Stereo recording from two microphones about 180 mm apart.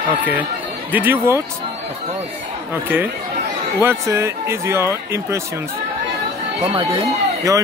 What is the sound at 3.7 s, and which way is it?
Speech, 15° right (ahead or behind).